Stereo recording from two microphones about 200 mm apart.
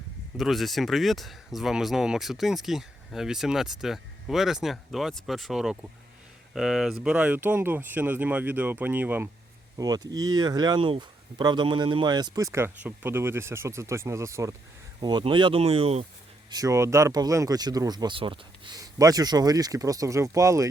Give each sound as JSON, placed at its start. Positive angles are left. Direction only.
{"t": 0.3, "sound": "speech", "side_deg": 0}
{"t": 16.5, "sound": "speech", "side_deg": -15}